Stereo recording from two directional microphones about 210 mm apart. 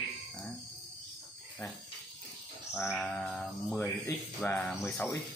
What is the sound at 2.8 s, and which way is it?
Bird, centre (ahead or behind).